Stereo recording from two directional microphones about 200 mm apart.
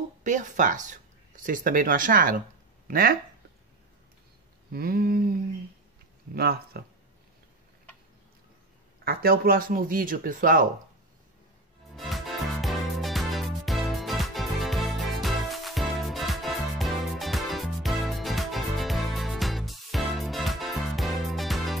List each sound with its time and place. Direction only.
0.2 s speech: 40° right (ahead or behind)
4.7 s speech: 50° right (ahead or behind)
9.0 s speech: 50° right (ahead or behind)
11.9 s music: centre (ahead or behind)